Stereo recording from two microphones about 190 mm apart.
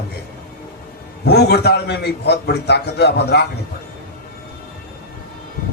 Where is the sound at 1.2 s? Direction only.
60° left (ahead or behind).